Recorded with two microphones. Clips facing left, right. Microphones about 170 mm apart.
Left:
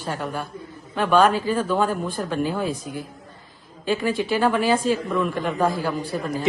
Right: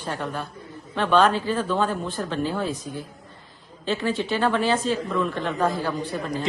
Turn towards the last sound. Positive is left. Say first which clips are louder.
# left 2 dB
turn(degrees=5)  # may be behind; listen again after turning